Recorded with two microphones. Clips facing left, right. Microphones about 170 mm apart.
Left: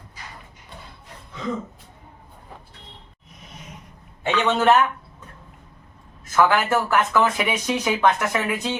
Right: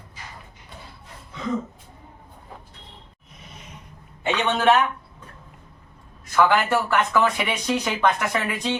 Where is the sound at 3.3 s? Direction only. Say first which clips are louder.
Left 2 dB; centre (ahead or behind).